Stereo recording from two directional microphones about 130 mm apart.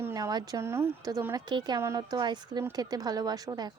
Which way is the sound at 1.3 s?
35° right (ahead or behind).